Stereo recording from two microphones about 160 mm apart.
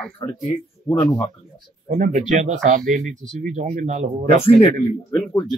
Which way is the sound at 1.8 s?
50° right (ahead or behind).